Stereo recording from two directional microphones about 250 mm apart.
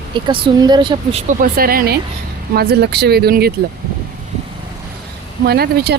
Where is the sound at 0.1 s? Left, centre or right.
Centre.